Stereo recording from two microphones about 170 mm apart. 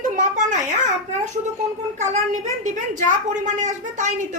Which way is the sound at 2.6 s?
45° right (ahead or behind).